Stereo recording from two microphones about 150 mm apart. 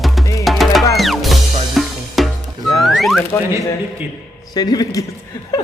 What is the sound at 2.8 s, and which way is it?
Speech, centre (ahead or behind).